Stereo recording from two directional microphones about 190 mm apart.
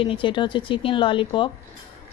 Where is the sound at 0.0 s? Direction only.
25° left (ahead or behind).